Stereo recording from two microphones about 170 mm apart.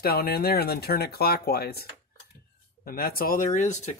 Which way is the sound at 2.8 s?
60° left (ahead or behind).